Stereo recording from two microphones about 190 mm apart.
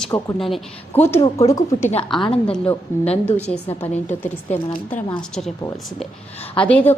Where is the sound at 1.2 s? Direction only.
35° left (ahead or behind).